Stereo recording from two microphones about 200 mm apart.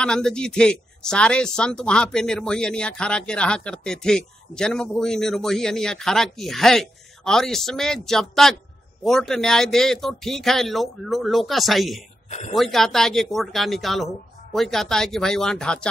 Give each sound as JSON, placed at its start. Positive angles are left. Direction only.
{"t": 0.0, "sound": "speech", "side_deg": 5}
{"t": 12.3, "sound": "speech", "side_deg": 35}
{"t": 12.5, "sound": "speech", "side_deg": 0}